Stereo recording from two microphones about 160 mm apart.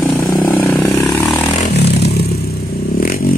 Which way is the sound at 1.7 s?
90° left.